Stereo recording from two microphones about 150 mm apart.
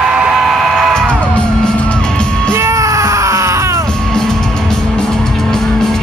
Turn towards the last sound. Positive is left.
turn(degrees=5)  # may be behind; listen again after turning